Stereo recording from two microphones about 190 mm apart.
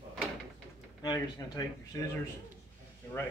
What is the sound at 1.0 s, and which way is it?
Speech, 20° left (ahead or behind).